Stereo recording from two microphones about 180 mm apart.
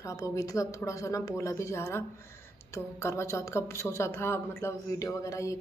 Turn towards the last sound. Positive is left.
turn(degrees=15)  # may be behind; listen again after turning